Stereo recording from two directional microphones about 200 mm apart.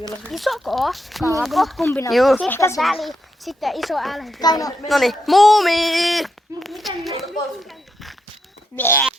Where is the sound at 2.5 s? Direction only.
15° left (ahead or behind).